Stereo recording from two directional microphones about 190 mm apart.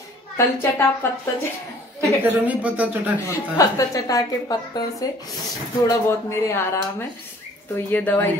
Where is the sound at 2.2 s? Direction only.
10° right (ahead or behind).